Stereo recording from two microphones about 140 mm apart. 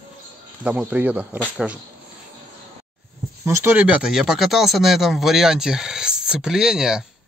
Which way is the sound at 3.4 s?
15° right (ahead or behind).